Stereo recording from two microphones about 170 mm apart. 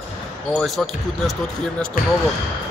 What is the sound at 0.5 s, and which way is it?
Speech, centre (ahead or behind).